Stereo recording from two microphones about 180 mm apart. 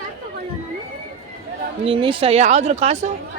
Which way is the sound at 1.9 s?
30° right (ahead or behind).